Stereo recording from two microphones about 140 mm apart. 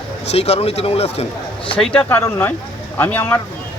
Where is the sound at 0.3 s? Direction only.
50° left (ahead or behind).